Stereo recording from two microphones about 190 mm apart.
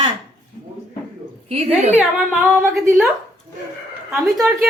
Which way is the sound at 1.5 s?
35° right (ahead or behind).